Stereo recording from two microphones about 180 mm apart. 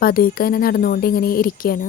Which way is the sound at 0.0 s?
55° left (ahead or behind).